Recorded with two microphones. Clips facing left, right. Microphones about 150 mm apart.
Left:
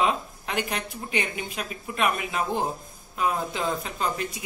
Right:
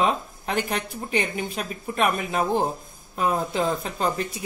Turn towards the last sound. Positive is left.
turn(degrees=-35)  # may be behind; listen again after turning